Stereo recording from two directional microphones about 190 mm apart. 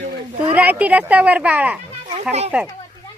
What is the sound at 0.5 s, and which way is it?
Speech, 10° right (ahead or behind).